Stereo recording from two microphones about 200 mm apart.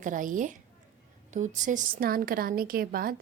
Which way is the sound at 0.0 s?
40° right (ahead or behind).